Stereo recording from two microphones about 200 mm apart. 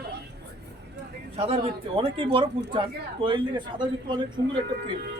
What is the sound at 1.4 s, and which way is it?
Speech, 30° right (ahead or behind).